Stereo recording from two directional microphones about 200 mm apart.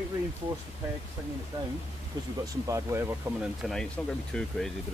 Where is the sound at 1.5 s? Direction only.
20° right (ahead or behind).